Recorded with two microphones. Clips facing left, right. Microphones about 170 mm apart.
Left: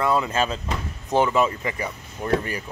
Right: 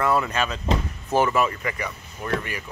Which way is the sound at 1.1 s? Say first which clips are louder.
Left 1 dB; 15° left (ahead or behind).